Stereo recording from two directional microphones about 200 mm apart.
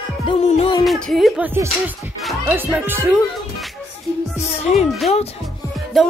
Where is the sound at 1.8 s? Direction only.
Centre (ahead or behind).